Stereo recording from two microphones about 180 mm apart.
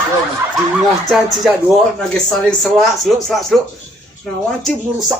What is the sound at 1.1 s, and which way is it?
Speech, centre (ahead or behind).